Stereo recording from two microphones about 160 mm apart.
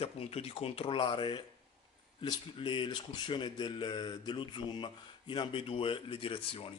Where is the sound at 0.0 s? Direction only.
40° left (ahead or behind).